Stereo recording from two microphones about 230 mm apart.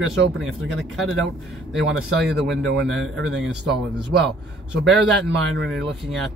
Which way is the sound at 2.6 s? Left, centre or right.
Right.